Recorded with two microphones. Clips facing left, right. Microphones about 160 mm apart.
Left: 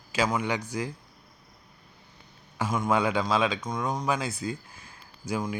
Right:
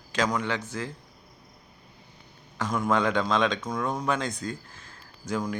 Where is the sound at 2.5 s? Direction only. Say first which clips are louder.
Even; 5° left (ahead or behind).